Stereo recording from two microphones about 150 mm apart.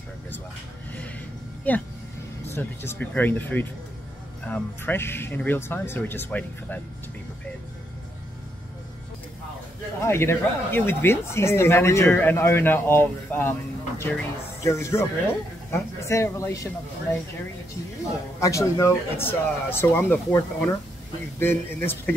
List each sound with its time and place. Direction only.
1.7 s speech: 10° left (ahead or behind)
9.9 s speech: 15° left (ahead or behind)
18.4 s speech: 20° left (ahead or behind)